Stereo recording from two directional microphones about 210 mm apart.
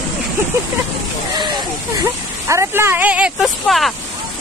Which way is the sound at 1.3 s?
20° right (ahead or behind).